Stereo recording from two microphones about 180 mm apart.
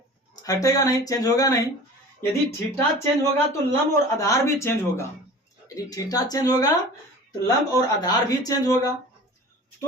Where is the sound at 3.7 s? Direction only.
20° left (ahead or behind).